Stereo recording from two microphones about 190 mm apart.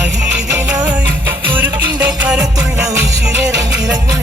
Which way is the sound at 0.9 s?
10° right (ahead or behind).